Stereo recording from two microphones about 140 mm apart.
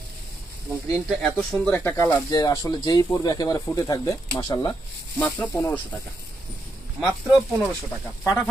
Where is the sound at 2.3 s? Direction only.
25° left (ahead or behind).